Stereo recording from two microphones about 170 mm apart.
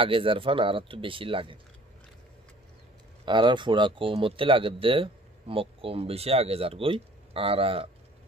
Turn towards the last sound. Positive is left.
turn(degrees=-35)  # may be behind; listen again after turning